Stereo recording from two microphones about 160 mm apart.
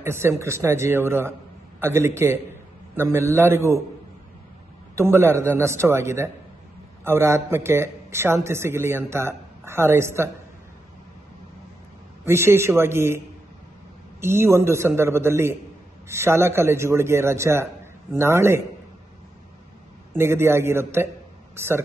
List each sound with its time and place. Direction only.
0.0 s speech: 15° right (ahead or behind)
4.9 s speech: 15° right (ahead or behind)
12.3 s speech: 15° right (ahead or behind)
14.2 s speech: 15° right (ahead or behind)
20.2 s speech: 15° right (ahead or behind)